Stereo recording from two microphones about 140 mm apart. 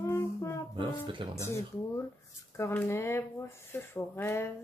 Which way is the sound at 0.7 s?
35° right (ahead or behind).